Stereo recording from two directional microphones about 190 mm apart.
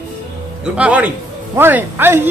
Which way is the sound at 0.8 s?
10° right (ahead or behind).